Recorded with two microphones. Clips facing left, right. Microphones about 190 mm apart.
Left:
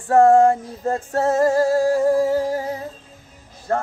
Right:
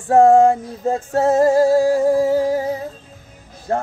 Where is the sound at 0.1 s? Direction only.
25° right (ahead or behind).